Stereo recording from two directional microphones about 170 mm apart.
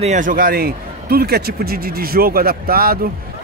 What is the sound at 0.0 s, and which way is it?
Speech, 45° right (ahead or behind).